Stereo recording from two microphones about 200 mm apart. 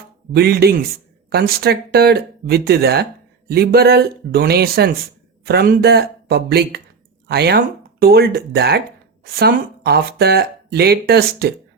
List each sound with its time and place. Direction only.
0.3 s speech: 50° right (ahead or behind)